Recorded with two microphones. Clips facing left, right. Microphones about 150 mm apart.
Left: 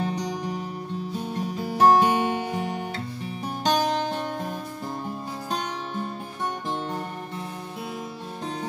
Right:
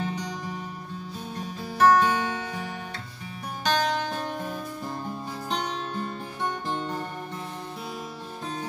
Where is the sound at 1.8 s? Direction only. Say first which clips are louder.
Left 2 dB; 20° left (ahead or behind).